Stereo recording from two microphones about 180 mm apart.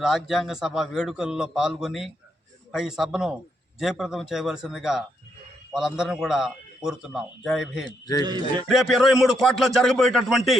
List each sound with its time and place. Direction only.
0.0 s a man's voice: centre (ahead or behind)
7.9 s a man's voice: 20° left (ahead or behind)
8.2 s a man's voice: 25° right (ahead or behind)
8.6 s a man's voice: centre (ahead or behind)